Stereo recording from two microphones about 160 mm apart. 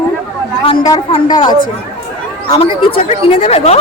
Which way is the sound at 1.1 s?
25° left (ahead or behind).